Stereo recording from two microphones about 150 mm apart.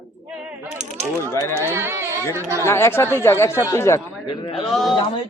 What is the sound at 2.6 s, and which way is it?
Speech, 15° left (ahead or behind).